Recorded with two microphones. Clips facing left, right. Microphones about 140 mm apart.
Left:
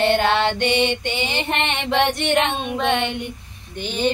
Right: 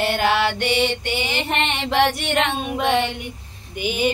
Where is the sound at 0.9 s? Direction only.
20° left (ahead or behind).